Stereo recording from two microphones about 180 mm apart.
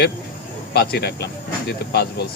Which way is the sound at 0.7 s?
65° left (ahead or behind).